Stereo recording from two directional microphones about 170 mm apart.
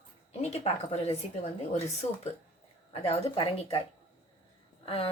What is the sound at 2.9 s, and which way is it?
Speech, 35° left (ahead or behind).